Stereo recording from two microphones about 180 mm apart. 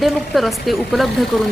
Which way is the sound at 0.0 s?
Centre (ahead or behind).